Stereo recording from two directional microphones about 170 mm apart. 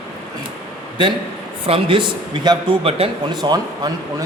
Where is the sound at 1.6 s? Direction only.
30° right (ahead or behind).